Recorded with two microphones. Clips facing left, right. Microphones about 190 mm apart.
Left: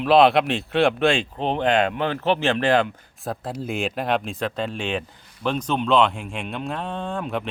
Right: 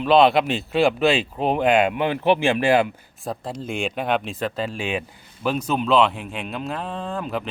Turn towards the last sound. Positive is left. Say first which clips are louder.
# even
turn(degrees=0)  # may be behind; listen again after turning